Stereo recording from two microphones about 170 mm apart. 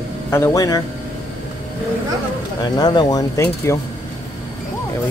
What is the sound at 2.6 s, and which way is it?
Speech, 25° left (ahead or behind).